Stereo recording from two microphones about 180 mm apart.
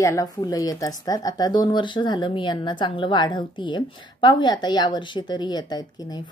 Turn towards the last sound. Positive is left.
turn(degrees=20)  # may be behind; listen again after turning